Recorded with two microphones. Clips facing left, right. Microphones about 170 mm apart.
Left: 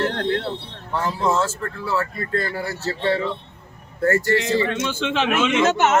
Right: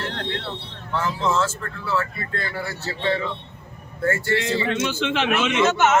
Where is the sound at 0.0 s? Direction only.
45° left (ahead or behind).